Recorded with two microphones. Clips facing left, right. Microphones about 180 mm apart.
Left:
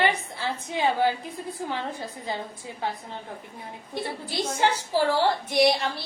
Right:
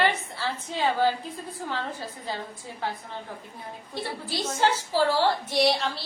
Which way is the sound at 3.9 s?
15° left (ahead or behind).